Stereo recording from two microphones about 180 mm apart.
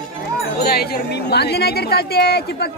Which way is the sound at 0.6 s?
60° left (ahead or behind).